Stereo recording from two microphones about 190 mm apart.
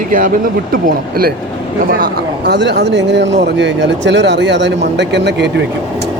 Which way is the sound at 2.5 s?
65° right (ahead or behind).